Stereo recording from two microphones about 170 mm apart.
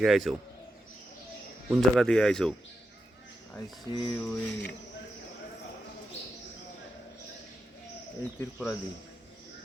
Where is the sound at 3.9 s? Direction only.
25° left (ahead or behind).